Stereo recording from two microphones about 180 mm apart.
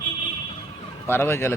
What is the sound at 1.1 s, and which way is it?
Speech, 15° left (ahead or behind).